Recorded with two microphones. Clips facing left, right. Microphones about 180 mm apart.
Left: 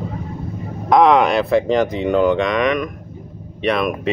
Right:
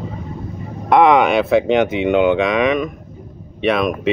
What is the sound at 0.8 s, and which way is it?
Speech, 5° right (ahead or behind).